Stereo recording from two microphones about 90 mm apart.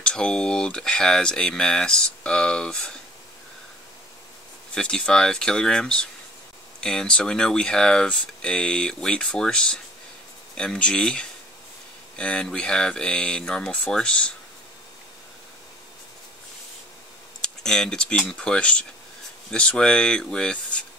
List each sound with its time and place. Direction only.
0.0 s speech: 10° left (ahead or behind)
4.7 s speech: 10° left (ahead or behind)
17.4 s speech: 10° left (ahead or behind)